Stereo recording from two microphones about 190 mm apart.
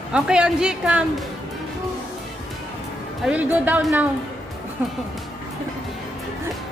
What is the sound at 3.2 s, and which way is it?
Speech, 10° right (ahead or behind).